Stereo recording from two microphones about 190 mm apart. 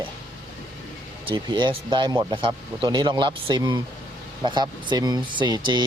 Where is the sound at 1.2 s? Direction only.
25° right (ahead or behind).